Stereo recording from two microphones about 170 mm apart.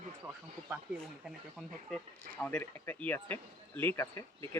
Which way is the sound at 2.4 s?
10° left (ahead or behind).